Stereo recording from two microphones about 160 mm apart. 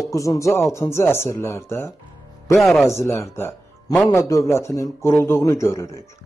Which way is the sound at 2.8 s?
15° left (ahead or behind).